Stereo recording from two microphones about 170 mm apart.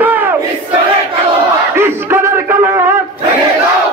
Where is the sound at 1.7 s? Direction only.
15° right (ahead or behind).